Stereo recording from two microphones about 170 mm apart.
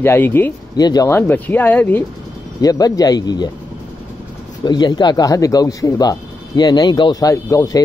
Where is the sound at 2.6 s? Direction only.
20° left (ahead or behind).